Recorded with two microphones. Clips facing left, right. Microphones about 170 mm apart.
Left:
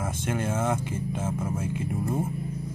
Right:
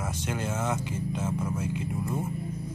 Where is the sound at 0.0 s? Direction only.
50° left (ahead or behind).